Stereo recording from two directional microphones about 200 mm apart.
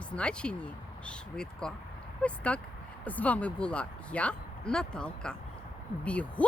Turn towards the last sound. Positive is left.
turn(degrees=5)  # may be behind; listen again after turning